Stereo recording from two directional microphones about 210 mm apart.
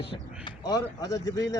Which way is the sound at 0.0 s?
25° left (ahead or behind).